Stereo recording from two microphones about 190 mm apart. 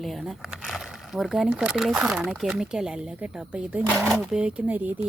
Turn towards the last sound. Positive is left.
turn(degrees=-10)  # may be behind; listen again after turning